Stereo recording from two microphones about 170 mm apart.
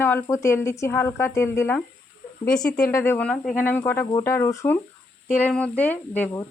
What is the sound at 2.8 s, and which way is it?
Speech, 15° left (ahead or behind).